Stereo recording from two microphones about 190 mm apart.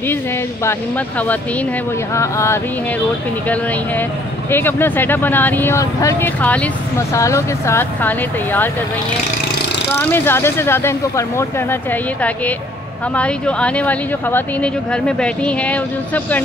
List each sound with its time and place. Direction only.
0.7 s speech: 10° left (ahead or behind)
4.5 s speech: 10° left (ahead or behind)
9.9 s speech: 10° left (ahead or behind)